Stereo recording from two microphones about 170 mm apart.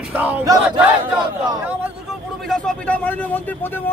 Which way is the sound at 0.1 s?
10° right (ahead or behind).